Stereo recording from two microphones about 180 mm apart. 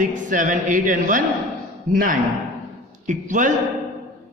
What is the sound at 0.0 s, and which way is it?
A man's voice, 45° right (ahead or behind).